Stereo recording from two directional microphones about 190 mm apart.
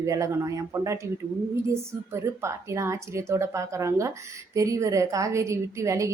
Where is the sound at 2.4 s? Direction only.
15° right (ahead or behind).